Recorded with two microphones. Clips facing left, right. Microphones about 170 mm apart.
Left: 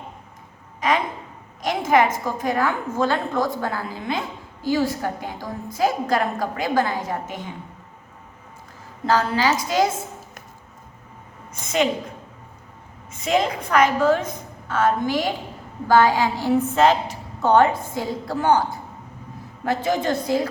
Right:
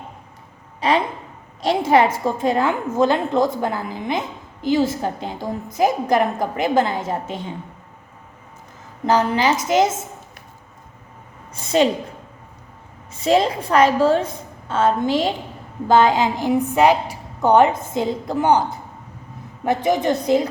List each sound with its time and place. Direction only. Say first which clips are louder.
0.8 s a sound: right 3 dB; 30° right (ahead or behind)
1.6 s a woman's voice: right 3 dB; 30° right (ahead or behind)
9.0 s a woman's voice: right 2 dB; 20° right (ahead or behind)
11.6 s a woman's voice: right 4 dB; 30° right (ahead or behind)
13.1 s a woman's voice: right 4 dB; 30° right (ahead or behind)